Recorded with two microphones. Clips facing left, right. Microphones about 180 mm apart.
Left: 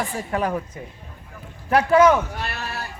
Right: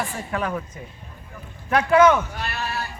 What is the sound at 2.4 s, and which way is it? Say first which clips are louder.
Speech: even; 50° left (ahead or behind).